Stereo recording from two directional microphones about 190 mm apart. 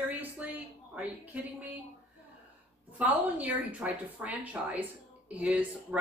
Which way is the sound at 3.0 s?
5° right (ahead or behind).